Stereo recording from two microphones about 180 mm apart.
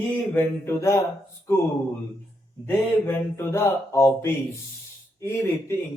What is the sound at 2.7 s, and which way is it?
Speech, 15° left (ahead or behind).